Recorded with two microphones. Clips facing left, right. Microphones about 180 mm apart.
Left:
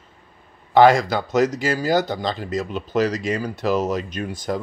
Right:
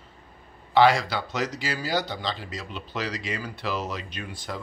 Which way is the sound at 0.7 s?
45° left (ahead or behind).